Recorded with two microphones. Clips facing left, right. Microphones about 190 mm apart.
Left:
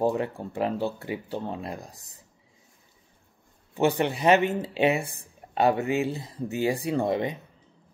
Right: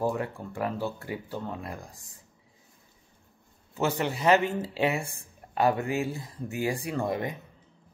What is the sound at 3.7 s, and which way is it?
Speech, 20° left (ahead or behind).